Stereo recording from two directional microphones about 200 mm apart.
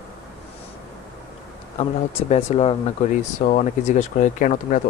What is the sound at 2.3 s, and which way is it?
Speech, 30° left (ahead or behind).